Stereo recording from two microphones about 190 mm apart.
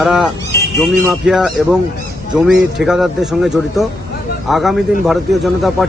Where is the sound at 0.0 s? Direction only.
5° right (ahead or behind).